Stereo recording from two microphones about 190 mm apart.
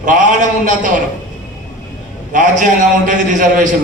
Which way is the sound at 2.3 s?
40° right (ahead or behind).